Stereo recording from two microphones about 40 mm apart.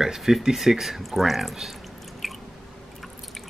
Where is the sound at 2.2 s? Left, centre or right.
Centre.